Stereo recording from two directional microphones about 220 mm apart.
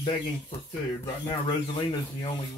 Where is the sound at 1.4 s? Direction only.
20° left (ahead or behind).